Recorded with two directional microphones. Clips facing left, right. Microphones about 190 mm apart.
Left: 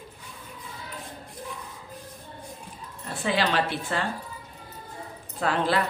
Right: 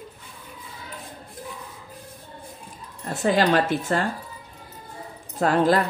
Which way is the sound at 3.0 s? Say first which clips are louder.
Right 6 dB; 45° right (ahead or behind).